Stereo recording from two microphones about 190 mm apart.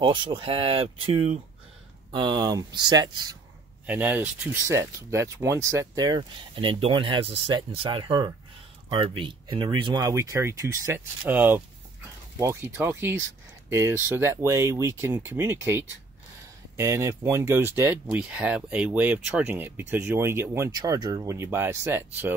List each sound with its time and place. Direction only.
0.0 s speech: 25° right (ahead or behind)
3.8 s speech: 10° right (ahead or behind)